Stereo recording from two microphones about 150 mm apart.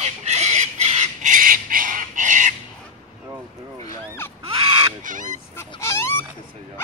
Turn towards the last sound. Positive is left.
turn(degrees=15)  # may be behind; listen again after turning